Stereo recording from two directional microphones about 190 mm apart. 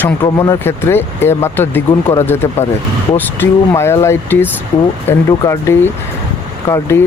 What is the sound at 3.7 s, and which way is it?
Speech, 15° left (ahead or behind).